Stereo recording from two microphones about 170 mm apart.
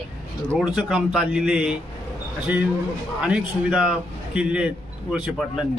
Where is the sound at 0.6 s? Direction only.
5° right (ahead or behind).